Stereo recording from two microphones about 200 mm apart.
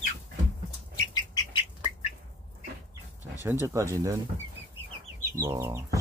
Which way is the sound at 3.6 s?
15° right (ahead or behind).